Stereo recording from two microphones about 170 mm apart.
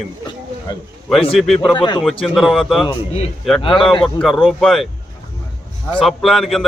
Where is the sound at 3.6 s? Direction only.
30° left (ahead or behind).